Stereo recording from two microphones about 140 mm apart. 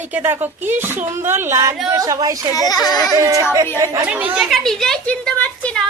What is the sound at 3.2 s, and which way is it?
Speech, 20° right (ahead or behind).